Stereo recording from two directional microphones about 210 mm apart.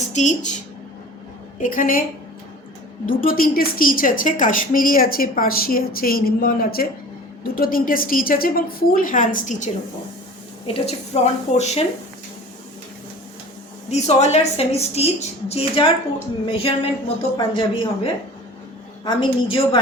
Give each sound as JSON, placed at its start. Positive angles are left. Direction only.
{"t": 0.1, "sound": "a woman's voice", "side_deg": 35}
{"t": 1.6, "sound": "a woman's voice", "side_deg": 40}
{"t": 3.1, "sound": "a woman's voice", "side_deg": 40}
{"t": 10.8, "sound": "a woman's voice", "side_deg": 30}
{"t": 13.9, "sound": "a woman's voice", "side_deg": 30}